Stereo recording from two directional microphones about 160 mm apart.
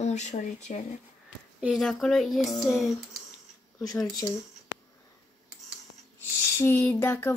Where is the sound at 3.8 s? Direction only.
20° left (ahead or behind).